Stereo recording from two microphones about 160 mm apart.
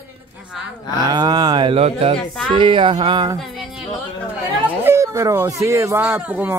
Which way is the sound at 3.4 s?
Centre (ahead or behind).